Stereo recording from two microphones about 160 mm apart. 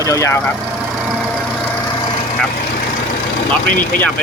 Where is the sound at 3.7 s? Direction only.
60° left (ahead or behind).